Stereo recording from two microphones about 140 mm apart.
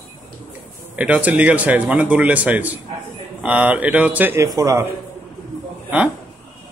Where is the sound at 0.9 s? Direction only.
10° right (ahead or behind).